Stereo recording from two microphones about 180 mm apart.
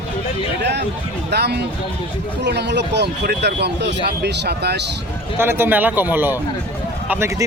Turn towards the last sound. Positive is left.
turn(degrees=-15)  # may be behind; listen again after turning